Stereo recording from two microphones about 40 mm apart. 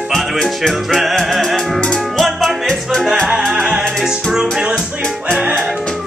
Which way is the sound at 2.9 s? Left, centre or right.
Centre.